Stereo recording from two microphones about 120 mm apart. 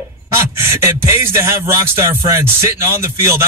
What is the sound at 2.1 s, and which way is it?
A man's voice, 25° right (ahead or behind).